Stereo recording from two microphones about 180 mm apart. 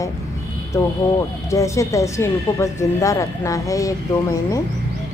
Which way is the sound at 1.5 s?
15° left (ahead or behind).